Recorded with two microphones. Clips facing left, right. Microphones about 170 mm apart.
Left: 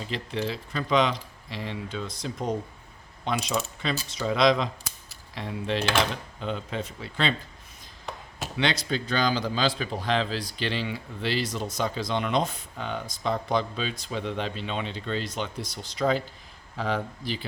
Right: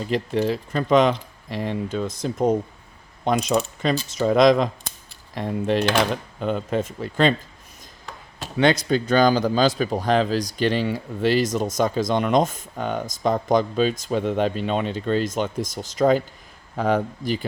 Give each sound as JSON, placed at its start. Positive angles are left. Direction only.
{"t": 0.0, "sound": "speech", "side_deg": -45}
{"t": 8.5, "sound": "speech", "side_deg": -45}